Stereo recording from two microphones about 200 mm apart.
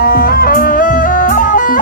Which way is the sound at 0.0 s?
45° left (ahead or behind).